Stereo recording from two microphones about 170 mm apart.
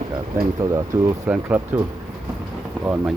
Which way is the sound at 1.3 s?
10° right (ahead or behind).